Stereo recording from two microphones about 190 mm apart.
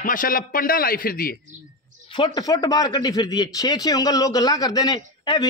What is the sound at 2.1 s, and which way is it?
A man's voice, 20° left (ahead or behind).